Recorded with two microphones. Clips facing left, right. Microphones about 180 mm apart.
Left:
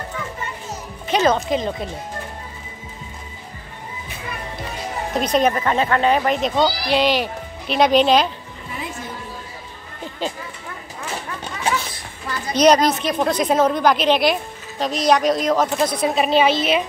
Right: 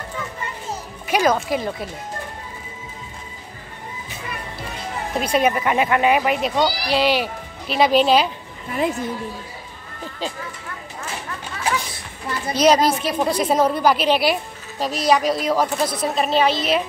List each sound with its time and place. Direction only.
1.0 s speech: 10° right (ahead or behind)
1.5 s speech: 20° left (ahead or behind)
5.1 s a woman's voice: 10° right (ahead or behind)
12.5 s a woman's voice: 5° right (ahead or behind)